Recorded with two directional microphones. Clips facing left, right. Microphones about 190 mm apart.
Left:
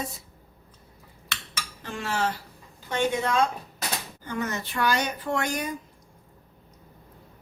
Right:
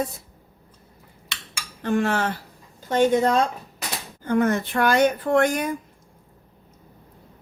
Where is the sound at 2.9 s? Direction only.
40° right (ahead or behind).